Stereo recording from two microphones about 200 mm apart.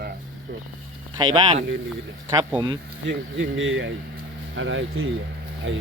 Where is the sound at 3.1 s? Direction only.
65° right (ahead or behind).